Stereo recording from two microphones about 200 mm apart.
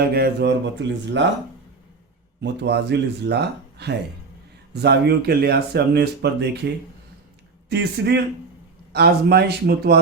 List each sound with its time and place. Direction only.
0.1 s speech: 55° right (ahead or behind)
2.4 s speech: 60° right (ahead or behind)
7.7 s speech: 55° right (ahead or behind)